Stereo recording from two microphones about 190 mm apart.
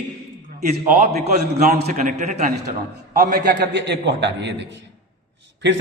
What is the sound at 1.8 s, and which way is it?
Speech, 40° right (ahead or behind).